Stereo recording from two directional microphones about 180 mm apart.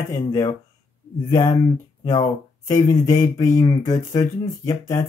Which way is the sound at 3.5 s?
20° left (ahead or behind).